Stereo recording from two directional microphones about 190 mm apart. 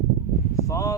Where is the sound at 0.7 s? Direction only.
15° left (ahead or behind).